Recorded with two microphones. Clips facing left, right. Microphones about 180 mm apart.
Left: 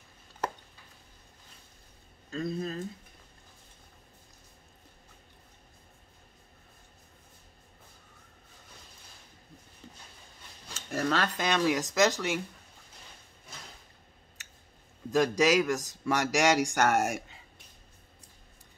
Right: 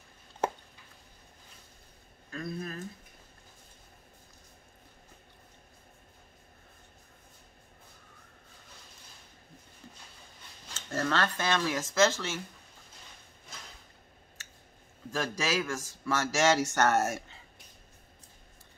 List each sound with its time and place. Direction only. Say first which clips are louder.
2.3 s a sound: left 4 dB; 20° left (ahead or behind)
10.7 s a man's voice: left 1 dB; 15° left (ahead or behind)
15.0 s a man's voice: left 8 dB; 15° left (ahead or behind)